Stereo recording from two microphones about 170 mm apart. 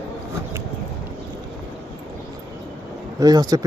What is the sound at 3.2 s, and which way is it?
Speech, 20° right (ahead or behind).